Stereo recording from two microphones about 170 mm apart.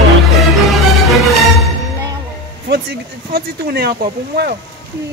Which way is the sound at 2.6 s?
75° right (ahead or behind).